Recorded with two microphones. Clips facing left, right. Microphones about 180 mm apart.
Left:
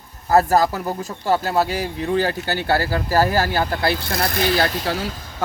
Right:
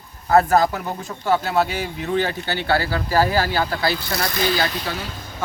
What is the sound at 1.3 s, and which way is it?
Speech, 35° left (ahead or behind).